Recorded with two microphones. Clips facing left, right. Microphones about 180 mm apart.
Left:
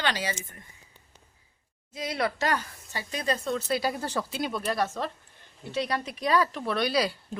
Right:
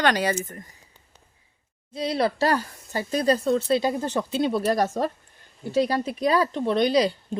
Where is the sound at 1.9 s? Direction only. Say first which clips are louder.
Right 6 dB; 30° right (ahead or behind).